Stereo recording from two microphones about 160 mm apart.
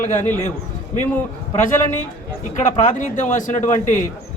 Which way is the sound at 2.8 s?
50° left (ahead or behind).